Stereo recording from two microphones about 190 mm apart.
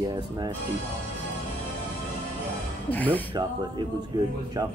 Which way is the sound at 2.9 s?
10° left (ahead or behind).